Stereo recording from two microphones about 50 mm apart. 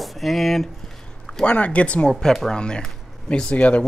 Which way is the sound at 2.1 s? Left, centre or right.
Centre.